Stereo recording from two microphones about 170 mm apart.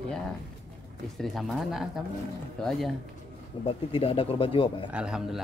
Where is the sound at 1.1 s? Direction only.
Centre (ahead or behind).